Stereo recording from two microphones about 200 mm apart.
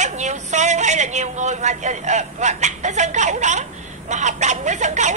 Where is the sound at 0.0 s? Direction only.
35° right (ahead or behind).